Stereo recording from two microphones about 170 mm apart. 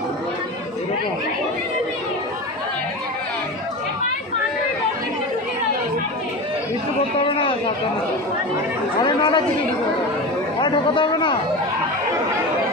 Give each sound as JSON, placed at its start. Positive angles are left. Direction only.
{"t": 7.2, "sound": "a sound", "side_deg": 30}
{"t": 9.0, "sound": "chatter", "side_deg": 30}
{"t": 10.6, "sound": "chatter", "side_deg": 25}